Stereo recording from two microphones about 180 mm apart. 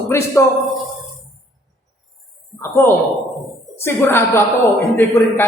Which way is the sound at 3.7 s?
15° left (ahead or behind).